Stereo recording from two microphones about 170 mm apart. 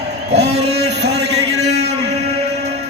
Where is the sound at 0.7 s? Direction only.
75° right (ahead or behind).